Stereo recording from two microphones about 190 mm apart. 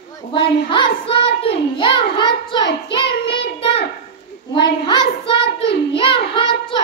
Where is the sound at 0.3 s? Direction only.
25° left (ahead or behind).